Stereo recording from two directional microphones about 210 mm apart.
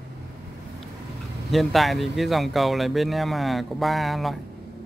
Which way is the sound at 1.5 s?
Centre (ahead or behind).